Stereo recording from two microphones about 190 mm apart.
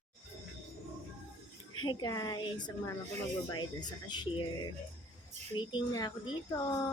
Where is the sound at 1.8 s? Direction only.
20° left (ahead or behind).